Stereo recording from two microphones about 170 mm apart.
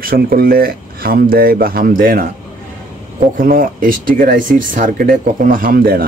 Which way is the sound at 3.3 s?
55° right (ahead or behind).